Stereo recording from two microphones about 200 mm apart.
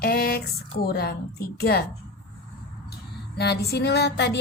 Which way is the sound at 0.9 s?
55° left (ahead or behind).